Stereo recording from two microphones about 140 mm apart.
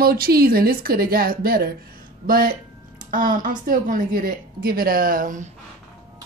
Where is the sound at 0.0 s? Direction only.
90° right.